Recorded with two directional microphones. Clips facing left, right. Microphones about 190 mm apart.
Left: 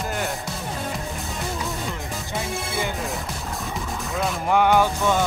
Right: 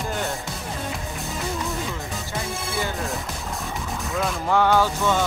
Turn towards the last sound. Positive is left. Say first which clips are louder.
# left 1 dB
turn(degrees=15)  # may be behind; listen again after turning